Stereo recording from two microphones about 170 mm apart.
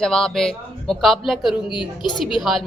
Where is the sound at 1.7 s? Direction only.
25° left (ahead or behind).